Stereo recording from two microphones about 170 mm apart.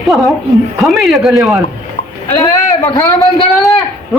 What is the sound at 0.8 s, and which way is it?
Speech, centre (ahead or behind).